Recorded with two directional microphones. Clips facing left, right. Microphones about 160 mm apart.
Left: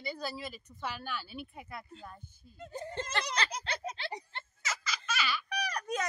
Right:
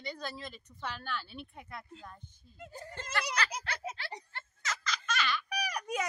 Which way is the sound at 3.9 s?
10° right (ahead or behind).